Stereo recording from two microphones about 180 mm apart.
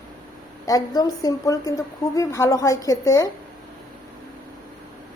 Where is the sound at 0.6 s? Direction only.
20° left (ahead or behind).